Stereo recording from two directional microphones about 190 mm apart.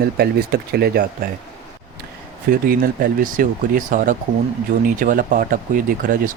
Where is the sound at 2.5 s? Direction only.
50° right (ahead or behind).